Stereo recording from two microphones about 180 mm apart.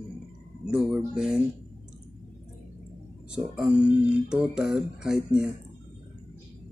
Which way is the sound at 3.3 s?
5° right (ahead or behind).